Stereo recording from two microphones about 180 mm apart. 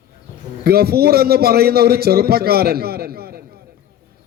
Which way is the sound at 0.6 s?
60° right (ahead or behind).